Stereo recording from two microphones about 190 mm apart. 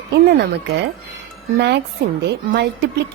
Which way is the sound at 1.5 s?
60° right (ahead or behind).